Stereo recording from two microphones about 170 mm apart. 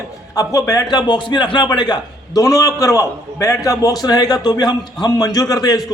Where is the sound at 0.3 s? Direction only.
20° left (ahead or behind).